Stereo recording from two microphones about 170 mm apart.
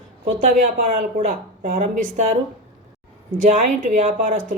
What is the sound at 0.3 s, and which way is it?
Speech, 50° right (ahead or behind).